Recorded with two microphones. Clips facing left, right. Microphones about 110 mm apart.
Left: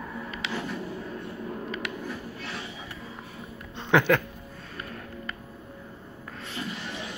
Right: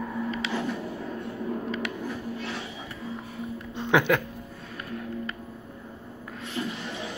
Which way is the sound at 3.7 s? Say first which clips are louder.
Left 1 dB; 10° right (ahead or behind).